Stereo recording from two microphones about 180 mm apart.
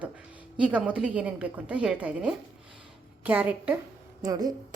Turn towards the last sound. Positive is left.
turn(degrees=-20)  # may be behind; listen again after turning